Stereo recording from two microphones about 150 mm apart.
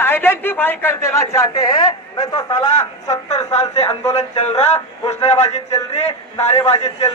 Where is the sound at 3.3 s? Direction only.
45° left (ahead or behind).